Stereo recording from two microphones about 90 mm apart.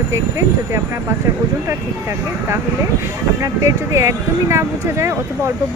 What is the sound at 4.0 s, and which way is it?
Speech, 35° right (ahead or behind).